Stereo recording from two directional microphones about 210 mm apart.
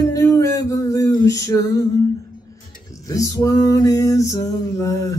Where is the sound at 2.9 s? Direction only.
15° left (ahead or behind).